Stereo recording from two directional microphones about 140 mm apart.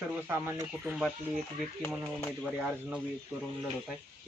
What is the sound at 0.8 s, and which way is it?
Speech, 5° right (ahead or behind).